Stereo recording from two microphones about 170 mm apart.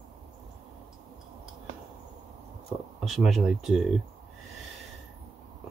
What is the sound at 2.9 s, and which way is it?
Speech, centre (ahead or behind).